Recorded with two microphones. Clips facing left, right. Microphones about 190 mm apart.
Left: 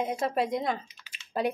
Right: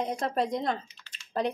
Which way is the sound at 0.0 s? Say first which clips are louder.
Left 1 dB; 5° left (ahead or behind).